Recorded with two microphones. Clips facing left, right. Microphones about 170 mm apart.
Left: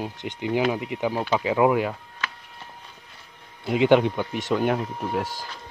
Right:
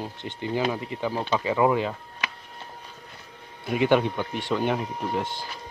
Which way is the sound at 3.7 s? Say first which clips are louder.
Left 3 dB; 20° left (ahead or behind).